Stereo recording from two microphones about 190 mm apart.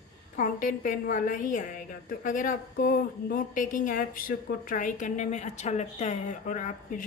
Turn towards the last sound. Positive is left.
turn(degrees=45)  # may be behind; listen again after turning